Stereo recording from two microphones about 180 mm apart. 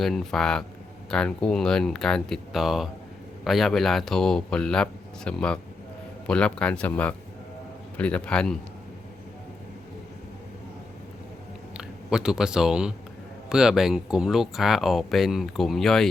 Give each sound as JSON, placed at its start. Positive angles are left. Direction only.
{"t": 0.0, "sound": "a man's voice", "side_deg": 0}
{"t": 11.8, "sound": "speech", "side_deg": -5}